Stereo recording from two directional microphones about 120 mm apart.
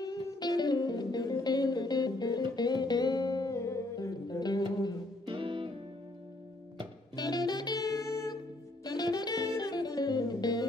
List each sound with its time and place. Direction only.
0.1 s music: 35° left (ahead or behind)
5.2 s music: 45° right (ahead or behind)
7.2 s music: 35° left (ahead or behind)